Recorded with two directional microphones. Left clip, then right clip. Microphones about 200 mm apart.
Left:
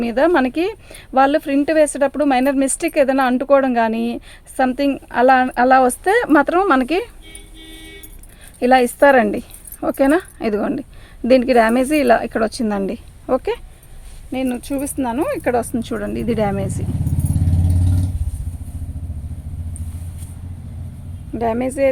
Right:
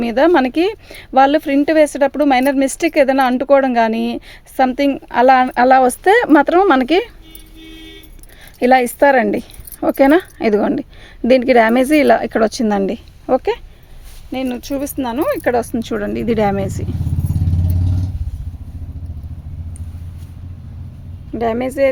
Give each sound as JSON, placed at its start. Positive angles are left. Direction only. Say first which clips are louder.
{"t": 0.0, "sound": "speech", "louder": "right 3 dB", "side_deg": -35}
{"t": 8.5, "sound": "speech", "louder": "right 2 dB", "side_deg": -35}
{"t": 21.3, "sound": "speech", "louder": "right 2 dB", "side_deg": -45}